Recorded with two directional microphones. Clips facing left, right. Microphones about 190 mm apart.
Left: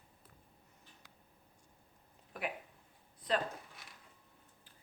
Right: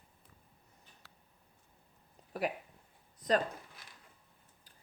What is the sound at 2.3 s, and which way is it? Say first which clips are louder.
Speech: right 6 dB; 35° right (ahead or behind).